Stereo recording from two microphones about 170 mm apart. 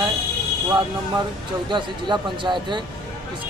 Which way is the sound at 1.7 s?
25° right (ahead or behind).